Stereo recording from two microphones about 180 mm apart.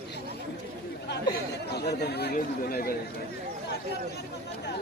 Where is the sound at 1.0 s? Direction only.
70° left (ahead or behind).